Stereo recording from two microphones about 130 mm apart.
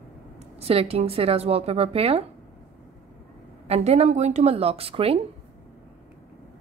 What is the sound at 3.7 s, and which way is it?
A woman's voice, 55° right (ahead or behind).